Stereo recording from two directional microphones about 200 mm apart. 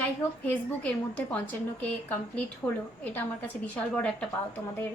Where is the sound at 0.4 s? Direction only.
5° left (ahead or behind).